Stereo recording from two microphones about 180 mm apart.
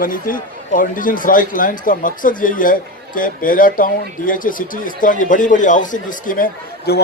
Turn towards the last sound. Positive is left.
turn(degrees=65)  # may be behind; listen again after turning